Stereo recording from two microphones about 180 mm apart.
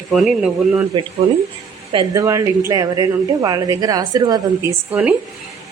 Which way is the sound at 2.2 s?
15° right (ahead or behind).